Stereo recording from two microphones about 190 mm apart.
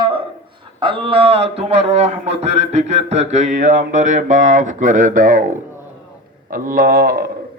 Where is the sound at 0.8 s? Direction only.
25° right (ahead or behind); by 5.4 s 45° right (ahead or behind).